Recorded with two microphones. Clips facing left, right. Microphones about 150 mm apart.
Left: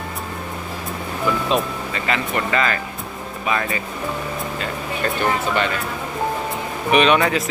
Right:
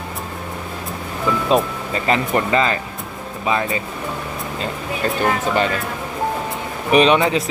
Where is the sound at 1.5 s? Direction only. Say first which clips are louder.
Right 7 dB; 40° right (ahead or behind).